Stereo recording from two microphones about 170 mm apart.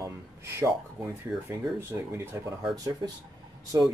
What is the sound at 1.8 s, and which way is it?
Speech, 15° right (ahead or behind).